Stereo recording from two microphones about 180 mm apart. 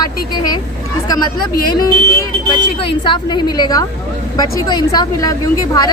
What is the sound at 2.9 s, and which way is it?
A woman's voice, 25° left (ahead or behind).